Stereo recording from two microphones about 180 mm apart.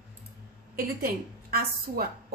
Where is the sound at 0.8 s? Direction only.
55° right (ahead or behind).